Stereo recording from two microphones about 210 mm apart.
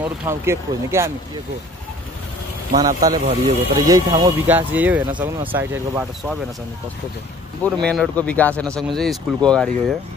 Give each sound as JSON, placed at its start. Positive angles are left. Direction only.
{"t": 0.0, "sound": "speech", "side_deg": -10}
{"t": 2.8, "sound": "speech", "side_deg": -15}
{"t": 7.6, "sound": "speech", "side_deg": 5}